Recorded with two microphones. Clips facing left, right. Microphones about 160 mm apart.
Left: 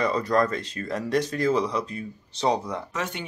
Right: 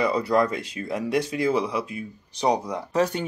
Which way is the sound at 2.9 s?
35° right (ahead or behind).